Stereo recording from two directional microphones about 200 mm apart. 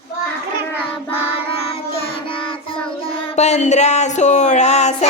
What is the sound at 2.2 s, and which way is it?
Child singing, 25° left (ahead or behind).